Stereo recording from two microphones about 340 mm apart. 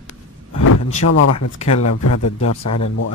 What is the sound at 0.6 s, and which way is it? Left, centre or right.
Vehicle, left.